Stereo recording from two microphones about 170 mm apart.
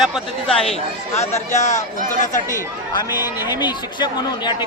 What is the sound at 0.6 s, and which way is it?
Speech, 35° left (ahead or behind).